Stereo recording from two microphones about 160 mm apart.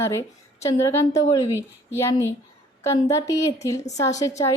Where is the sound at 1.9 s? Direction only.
15° left (ahead or behind).